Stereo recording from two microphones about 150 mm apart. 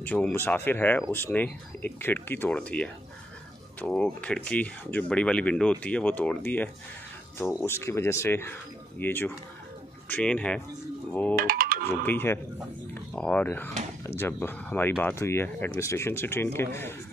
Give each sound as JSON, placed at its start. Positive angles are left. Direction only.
{"t": 0.0, "sound": "speech", "side_deg": 10}
{"t": 11.1, "sound": "a sound", "side_deg": 10}
{"t": 11.3, "sound": "music", "side_deg": -75}
{"t": 11.9, "sound": "speech", "side_deg": 15}